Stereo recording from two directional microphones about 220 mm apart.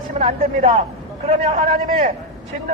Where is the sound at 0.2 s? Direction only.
30° right (ahead or behind).